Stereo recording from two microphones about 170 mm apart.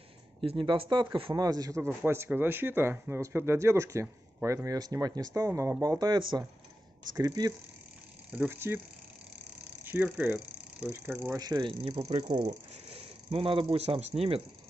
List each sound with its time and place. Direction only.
0.4 s speech: 30° right (ahead or behind)
8.3 s speech: 10° right (ahead or behind)
9.8 s speech: 10° right (ahead or behind)
11.2 s speech: 20° right (ahead or behind)